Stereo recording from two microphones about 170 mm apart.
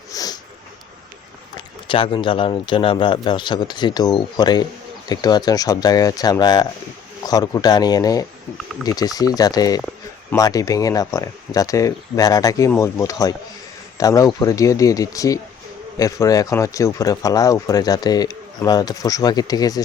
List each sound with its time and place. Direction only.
0.1 s snort: 20° left (ahead or behind)
1.5 s speech: 30° left (ahead or behind)